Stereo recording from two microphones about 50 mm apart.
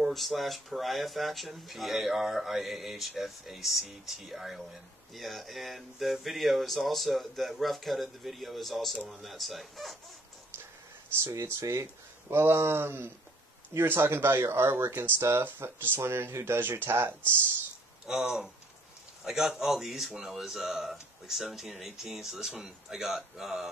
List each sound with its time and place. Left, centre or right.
0.1 s speech: centre
11.6 s speech: right
12.3 s speech: right
15.6 s speech: right
18.0 s speech: centre